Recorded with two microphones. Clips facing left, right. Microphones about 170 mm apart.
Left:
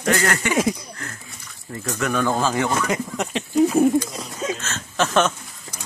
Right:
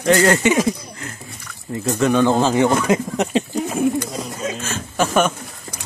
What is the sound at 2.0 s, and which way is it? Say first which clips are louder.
Speech: right 6 dB; 25° right (ahead or behind).